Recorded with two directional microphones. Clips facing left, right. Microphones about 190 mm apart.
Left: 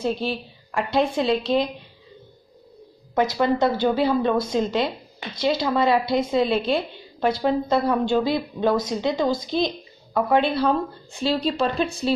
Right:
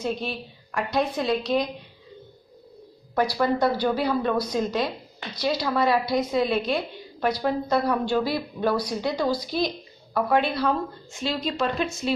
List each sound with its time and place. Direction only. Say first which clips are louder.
0.0 s speech: left 4 dB; 30° left (ahead or behind)
3.2 s speech: left 2 dB; 20° left (ahead or behind)